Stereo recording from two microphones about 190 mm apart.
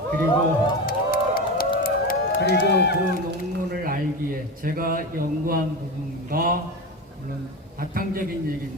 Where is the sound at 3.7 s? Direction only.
50° right (ahead or behind).